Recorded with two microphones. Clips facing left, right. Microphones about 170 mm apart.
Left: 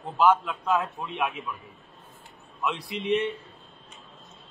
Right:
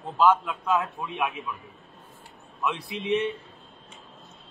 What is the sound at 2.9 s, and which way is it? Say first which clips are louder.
Speech: left 1 dB; 15° right (ahead or behind).